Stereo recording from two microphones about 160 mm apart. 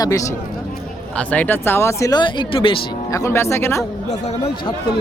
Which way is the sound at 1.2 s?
10° left (ahead or behind).